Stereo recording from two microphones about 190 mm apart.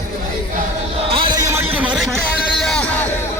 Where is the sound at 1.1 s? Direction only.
25° right (ahead or behind).